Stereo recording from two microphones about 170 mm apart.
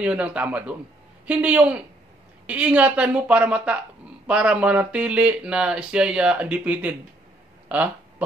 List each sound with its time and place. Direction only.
0.0 s speech: 5° right (ahead or behind)